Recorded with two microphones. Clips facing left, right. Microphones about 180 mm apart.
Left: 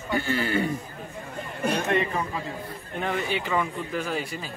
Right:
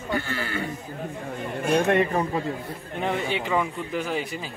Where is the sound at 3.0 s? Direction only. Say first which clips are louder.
Right 1 dB; 20° right (ahead or behind).